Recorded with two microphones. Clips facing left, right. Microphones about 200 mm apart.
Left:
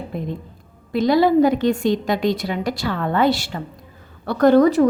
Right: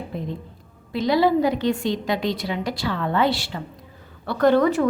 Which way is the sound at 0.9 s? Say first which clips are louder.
Left 4 dB; 50° left (ahead or behind).